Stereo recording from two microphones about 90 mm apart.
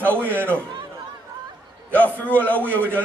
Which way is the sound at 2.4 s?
20° left (ahead or behind).